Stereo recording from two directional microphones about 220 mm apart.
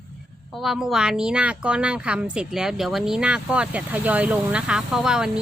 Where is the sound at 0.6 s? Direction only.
Centre (ahead or behind).